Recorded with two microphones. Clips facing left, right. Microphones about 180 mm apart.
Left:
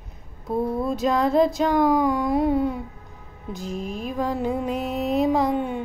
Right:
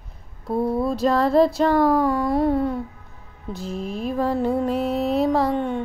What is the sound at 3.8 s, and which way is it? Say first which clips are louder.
Mantra: right 6 dB; 35° right (ahead or behind).